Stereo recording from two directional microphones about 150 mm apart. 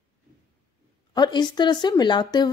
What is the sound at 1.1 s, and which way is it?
A woman's voice, 30° left (ahead or behind).